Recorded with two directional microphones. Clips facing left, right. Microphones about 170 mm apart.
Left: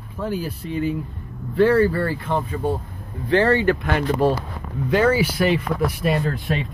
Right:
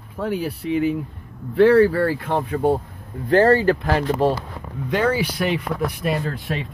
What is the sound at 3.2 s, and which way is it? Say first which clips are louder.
Speech: right 2 dB; 40° right (ahead or behind).